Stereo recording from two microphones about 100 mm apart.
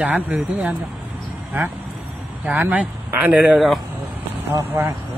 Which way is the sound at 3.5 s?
Centre (ahead or behind).